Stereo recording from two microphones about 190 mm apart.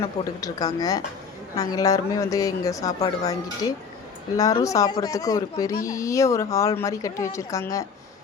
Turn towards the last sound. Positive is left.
turn(degrees=15)  # may be behind; listen again after turning